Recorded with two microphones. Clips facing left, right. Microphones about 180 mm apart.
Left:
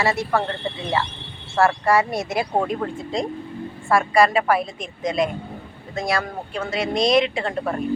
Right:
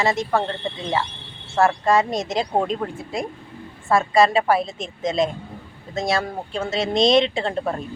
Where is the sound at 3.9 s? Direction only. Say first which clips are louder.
Even; 25° right (ahead or behind).